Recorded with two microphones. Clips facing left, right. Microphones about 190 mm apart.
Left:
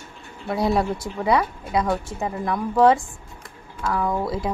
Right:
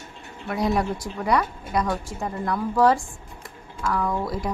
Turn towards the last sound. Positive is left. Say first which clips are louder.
# left 2 dB
turn(degrees=25)  # may be behind; listen again after turning